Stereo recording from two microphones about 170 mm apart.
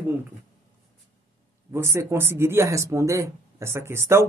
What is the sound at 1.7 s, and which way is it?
Speech, 15° right (ahead or behind).